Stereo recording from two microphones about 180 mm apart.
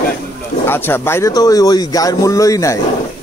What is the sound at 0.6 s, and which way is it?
A man's voice, 10° left (ahead or behind).